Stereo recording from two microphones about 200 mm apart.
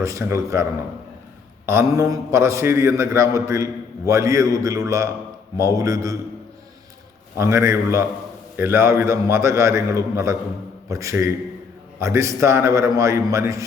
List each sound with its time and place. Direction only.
0.0 s a man's voice: 15° right (ahead or behind)
1.6 s a man's voice: 15° right (ahead or behind)
7.3 s a man's voice: 15° right (ahead or behind)